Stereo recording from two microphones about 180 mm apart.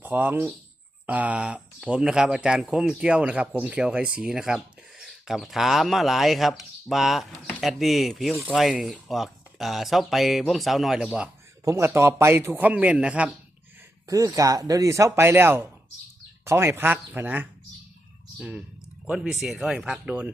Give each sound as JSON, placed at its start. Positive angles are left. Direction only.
{"t": 0.0, "sound": "a man's voice", "side_deg": -10}
{"t": 11.6, "sound": "a man's voice", "side_deg": -15}
{"t": 14.1, "sound": "a man's voice", "side_deg": -20}